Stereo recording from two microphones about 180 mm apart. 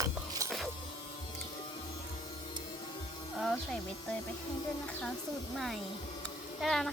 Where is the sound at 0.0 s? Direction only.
20° right (ahead or behind).